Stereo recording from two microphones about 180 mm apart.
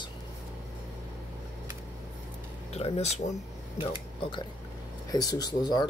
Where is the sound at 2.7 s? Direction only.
35° left (ahead or behind).